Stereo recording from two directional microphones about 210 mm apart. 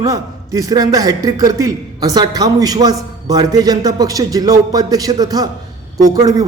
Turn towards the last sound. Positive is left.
turn(degrees=-15)  # may be behind; listen again after turning